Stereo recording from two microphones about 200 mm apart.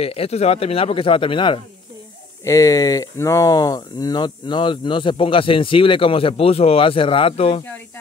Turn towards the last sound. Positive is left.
turn(degrees=10)  # may be behind; listen again after turning